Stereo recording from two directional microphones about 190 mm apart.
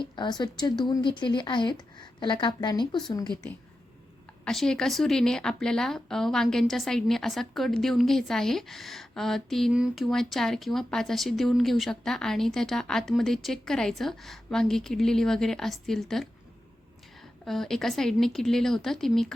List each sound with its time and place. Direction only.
0.0 s speech: 25° left (ahead or behind)
4.4 s speech: 5° left (ahead or behind)
17.4 s speech: centre (ahead or behind)